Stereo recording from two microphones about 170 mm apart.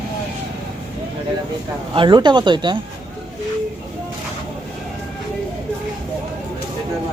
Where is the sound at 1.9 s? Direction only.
25° right (ahead or behind).